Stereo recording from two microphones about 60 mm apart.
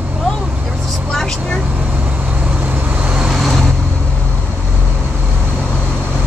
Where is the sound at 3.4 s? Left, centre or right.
Centre.